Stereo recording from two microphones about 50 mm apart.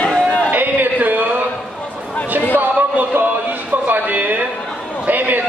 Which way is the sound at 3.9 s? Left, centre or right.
Right.